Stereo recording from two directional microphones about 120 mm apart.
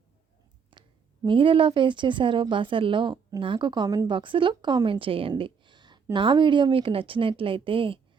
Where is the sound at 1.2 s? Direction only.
45° right (ahead or behind).